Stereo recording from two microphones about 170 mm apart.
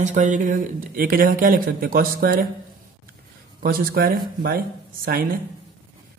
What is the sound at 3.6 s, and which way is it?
Speech, 60° right (ahead or behind).